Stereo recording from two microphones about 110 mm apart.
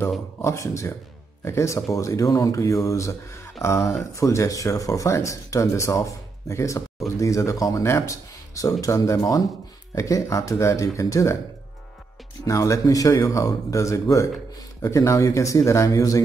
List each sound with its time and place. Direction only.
0.4 s speech: 25° left (ahead or behind)
12.4 s speech: 30° left (ahead or behind)